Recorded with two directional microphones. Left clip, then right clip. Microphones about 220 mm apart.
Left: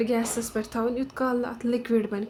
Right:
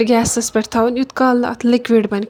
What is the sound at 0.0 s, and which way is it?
Speech, 35° right (ahead or behind).